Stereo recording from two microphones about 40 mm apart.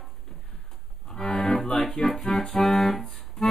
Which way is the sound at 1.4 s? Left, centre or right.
Left.